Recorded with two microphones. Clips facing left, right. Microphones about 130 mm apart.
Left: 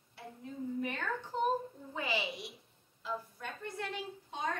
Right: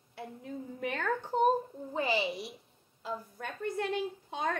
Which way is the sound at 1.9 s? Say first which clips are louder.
Right 6 dB; 35° right (ahead or behind).